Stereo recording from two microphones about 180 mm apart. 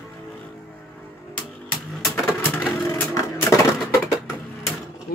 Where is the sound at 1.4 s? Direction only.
5° left (ahead or behind).